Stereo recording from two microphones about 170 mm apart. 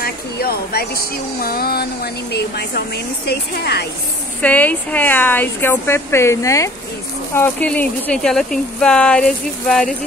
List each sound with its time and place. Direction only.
0.0 s speech: 65° left (ahead or behind)
4.4 s speech: 10° left (ahead or behind)